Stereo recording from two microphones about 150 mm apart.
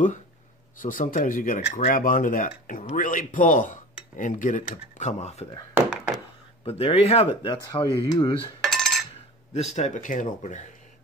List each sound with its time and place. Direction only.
0.8 s speech: 65° left (ahead or behind)
4.9 s speech: 50° left (ahead or behind)
5.8 s a sound: 10° right (ahead or behind)
6.6 s speech: 40° left (ahead or behind)
8.6 s a sound: centre (ahead or behind)
9.5 s speech: 50° left (ahead or behind)